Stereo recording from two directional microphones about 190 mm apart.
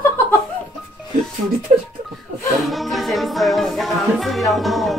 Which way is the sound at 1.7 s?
40° right (ahead or behind).